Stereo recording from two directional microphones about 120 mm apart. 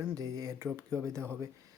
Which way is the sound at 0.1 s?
30° right (ahead or behind).